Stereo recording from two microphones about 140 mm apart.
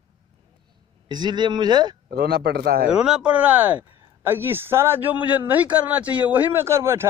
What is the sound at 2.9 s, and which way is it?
Speech, 5° right (ahead or behind).